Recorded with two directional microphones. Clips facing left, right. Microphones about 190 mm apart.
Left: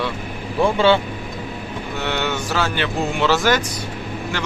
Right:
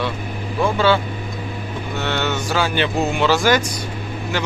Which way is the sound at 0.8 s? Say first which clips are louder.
Left 1 dB; 25° left (ahead or behind).